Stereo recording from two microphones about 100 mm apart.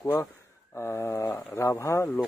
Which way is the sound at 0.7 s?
30° left (ahead or behind).